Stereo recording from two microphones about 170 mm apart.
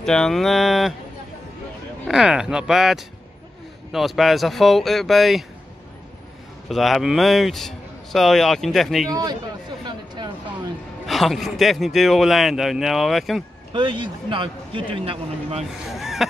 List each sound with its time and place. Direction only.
0.0 s a man's voice: 5° left (ahead or behind)
2.0 s a man's voice: 5° right (ahead or behind)
6.7 s a man's voice: centre (ahead or behind)
9.1 s a man's voice: 25° right (ahead or behind)
9.8 s a sound: 25° right (ahead or behind)
11.1 s a man's voice: centre (ahead or behind)
13.7 s a man's voice: 30° right (ahead or behind)
15.9 s a sound: centre (ahead or behind)